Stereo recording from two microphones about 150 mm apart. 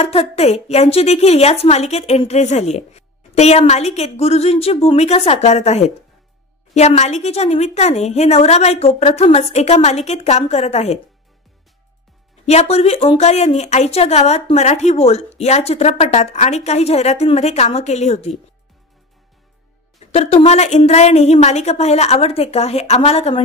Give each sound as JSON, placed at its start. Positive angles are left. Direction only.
{"t": 0.0, "sound": "a woman's voice", "side_deg": 45}
{"t": 12.4, "sound": "a woman's voice", "side_deg": 45}
{"t": 20.1, "sound": "a woman's voice", "side_deg": 45}